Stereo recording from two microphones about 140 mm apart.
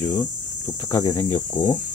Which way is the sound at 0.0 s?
15° left (ahead or behind).